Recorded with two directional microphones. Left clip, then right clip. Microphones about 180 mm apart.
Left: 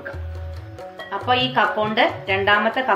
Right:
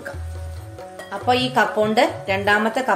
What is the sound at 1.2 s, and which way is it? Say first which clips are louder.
Speech: even; 80° right.